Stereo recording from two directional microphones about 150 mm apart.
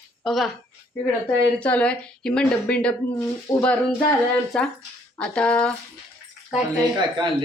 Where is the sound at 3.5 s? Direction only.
25° left (ahead or behind).